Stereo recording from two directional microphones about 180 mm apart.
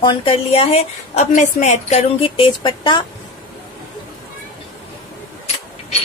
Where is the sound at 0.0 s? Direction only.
25° left (ahead or behind).